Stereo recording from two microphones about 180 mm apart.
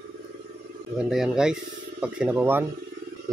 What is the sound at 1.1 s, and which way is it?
Speech, 5° right (ahead or behind).